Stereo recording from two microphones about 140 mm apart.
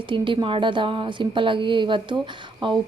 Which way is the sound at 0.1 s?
35° right (ahead or behind).